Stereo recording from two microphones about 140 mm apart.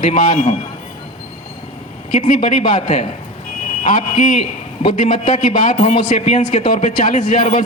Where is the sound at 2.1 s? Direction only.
65° left (ahead or behind).